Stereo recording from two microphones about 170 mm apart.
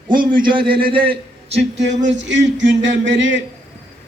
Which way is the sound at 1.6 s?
90° right.